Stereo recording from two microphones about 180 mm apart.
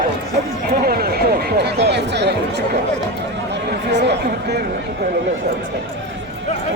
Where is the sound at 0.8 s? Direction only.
60° right (ahead or behind).